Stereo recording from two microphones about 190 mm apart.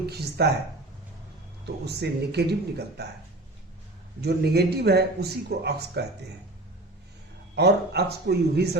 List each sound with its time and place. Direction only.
0.1 s a man's voice: 60° right (ahead or behind)
1.6 s a man's voice: 60° right (ahead or behind)
4.2 s a man's voice: 60° right (ahead or behind)
7.5 s a man's voice: 60° right (ahead or behind)